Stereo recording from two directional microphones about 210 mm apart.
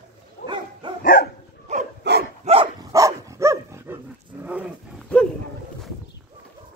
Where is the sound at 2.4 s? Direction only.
25° right (ahead or behind).